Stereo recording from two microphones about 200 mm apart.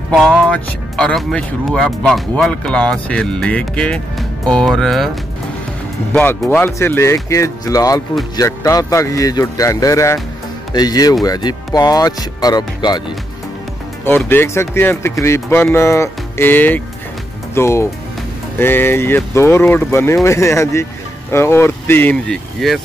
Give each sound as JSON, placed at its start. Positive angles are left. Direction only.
{"t": 0.1, "sound": "speech", "side_deg": 0}
{"t": 6.1, "sound": "speech", "side_deg": 10}
{"t": 14.0, "sound": "speech", "side_deg": 10}